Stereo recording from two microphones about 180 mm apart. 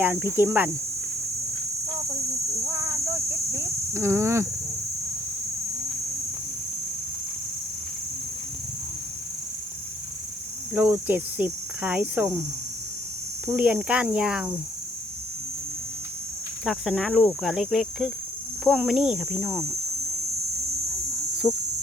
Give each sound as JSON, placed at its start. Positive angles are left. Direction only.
{"t": 0.0, "sound": "cricket", "side_deg": -10}
{"t": 2.6, "sound": "a sound", "side_deg": -15}
{"t": 3.5, "sound": "cricket", "side_deg": -15}
{"t": 10.8, "sound": "cricket", "side_deg": -10}
{"t": 13.5, "sound": "cricket", "side_deg": -10}
{"t": 16.6, "sound": "speech", "side_deg": 0}
{"t": 21.5, "sound": "cricket", "side_deg": -5}